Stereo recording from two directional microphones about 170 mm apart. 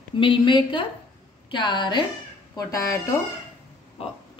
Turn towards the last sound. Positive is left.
turn(degrees=35)  # may be behind; listen again after turning